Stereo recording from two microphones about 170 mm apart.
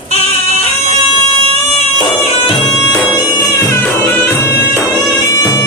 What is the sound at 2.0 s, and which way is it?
Music, 30° left (ahead or behind).